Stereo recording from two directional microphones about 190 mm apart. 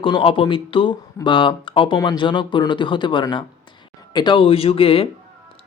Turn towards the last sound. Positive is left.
turn(degrees=30)  # may be behind; listen again after turning